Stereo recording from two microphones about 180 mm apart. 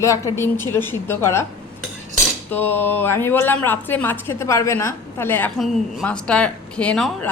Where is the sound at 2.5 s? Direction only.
10° left (ahead or behind).